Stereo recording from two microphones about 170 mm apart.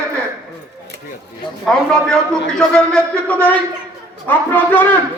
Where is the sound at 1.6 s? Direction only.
5° left (ahead or behind).